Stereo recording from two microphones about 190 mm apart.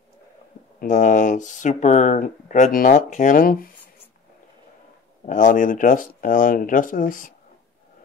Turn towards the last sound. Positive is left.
turn(degrees=45)  # may be behind; listen again after turning